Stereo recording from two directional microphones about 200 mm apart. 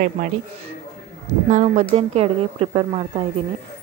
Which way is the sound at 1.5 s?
35° right (ahead or behind).